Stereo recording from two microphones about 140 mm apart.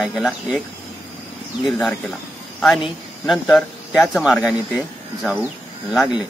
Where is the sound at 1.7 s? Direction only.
Centre (ahead or behind).